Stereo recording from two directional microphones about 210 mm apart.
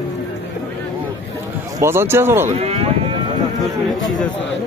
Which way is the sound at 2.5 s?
30° right (ahead or behind).